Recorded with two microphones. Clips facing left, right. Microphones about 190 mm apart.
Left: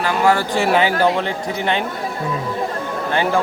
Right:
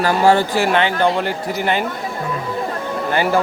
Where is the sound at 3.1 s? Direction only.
5° right (ahead or behind).